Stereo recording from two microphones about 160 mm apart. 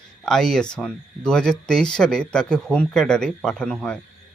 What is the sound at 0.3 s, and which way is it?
Speech, 5° left (ahead or behind).